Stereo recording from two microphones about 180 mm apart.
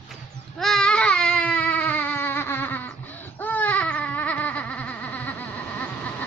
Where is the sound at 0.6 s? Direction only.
5° left (ahead or behind).